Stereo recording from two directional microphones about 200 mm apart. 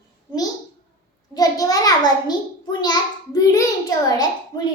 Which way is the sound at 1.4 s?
20° left (ahead or behind).